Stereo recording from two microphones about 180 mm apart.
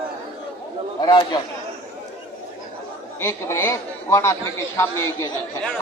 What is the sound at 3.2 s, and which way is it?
A man's voice, 15° left (ahead or behind).